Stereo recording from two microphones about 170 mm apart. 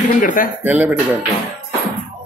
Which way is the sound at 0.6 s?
10° right (ahead or behind).